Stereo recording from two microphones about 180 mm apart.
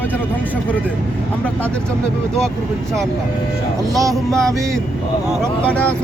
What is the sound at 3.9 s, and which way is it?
Music, 20° right (ahead or behind).